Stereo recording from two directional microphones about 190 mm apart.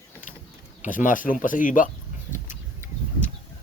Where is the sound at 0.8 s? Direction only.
45° left (ahead or behind).